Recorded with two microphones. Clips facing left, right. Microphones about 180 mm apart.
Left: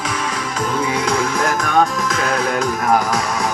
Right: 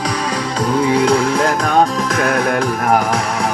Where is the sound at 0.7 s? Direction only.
35° right (ahead or behind).